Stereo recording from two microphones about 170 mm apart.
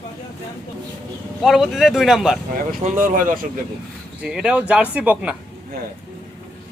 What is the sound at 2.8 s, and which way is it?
Speech, 50° right (ahead or behind).